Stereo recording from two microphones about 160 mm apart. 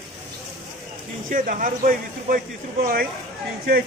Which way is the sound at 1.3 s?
55° right (ahead or behind).